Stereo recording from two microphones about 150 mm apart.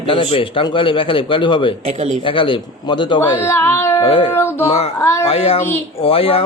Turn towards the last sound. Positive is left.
turn(degrees=40)  # may be behind; listen again after turning